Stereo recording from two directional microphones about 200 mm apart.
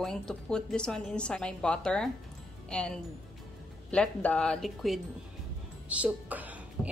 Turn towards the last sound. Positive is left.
turn(degrees=-10)  # may be behind; listen again after turning